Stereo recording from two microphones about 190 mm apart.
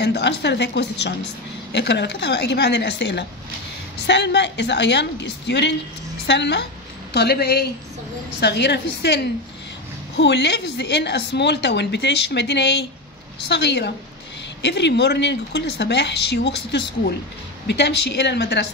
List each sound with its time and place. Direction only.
0.0 s a woman's voice: 65° left (ahead or behind)